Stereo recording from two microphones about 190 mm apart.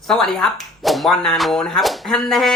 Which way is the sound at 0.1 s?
5° left (ahead or behind).